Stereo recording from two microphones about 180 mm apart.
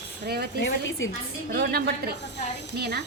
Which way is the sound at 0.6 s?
90° left.